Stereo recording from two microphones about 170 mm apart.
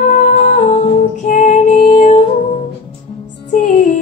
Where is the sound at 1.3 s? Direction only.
45° left (ahead or behind).